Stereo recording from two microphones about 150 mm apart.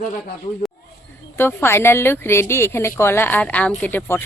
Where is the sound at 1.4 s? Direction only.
15° left (ahead or behind).